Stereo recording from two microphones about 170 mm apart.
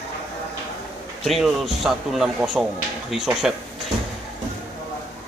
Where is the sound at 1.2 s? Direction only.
Centre (ahead or behind).